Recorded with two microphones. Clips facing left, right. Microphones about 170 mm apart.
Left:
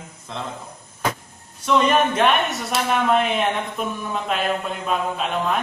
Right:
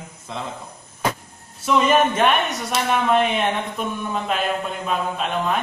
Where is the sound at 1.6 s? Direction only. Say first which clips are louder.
Right 1 dB; 5° right (ahead or behind).